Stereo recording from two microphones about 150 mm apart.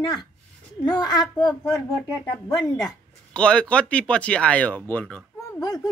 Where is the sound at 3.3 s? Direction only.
5° left (ahead or behind).